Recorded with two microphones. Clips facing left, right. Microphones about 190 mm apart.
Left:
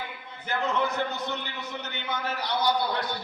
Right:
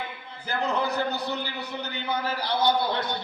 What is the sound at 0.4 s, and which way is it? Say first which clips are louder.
A man's voice: right 1 dB; 35° right (ahead or behind).